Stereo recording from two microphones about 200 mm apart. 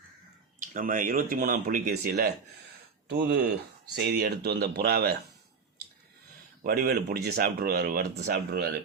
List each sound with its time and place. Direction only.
0.6 s speech: 40° right (ahead or behind)
6.6 s speech: 50° right (ahead or behind)